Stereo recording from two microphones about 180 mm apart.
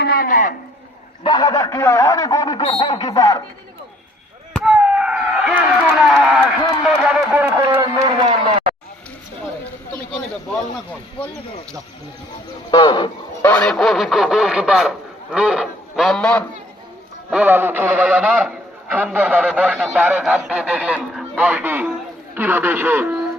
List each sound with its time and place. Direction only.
0.0 s a man's voice: 55° left (ahead or behind)
1.2 s a man's voice: 25° left (ahead or behind)
4.5 s chop: 5° right (ahead or behind)
7.7 s a sound: 25° right (ahead or behind)
12.7 s a man's voice: 25° left (ahead or behind)
13.4 s speech: 5° left (ahead or behind)
17.3 s a man's voice: 10° right (ahead or behind)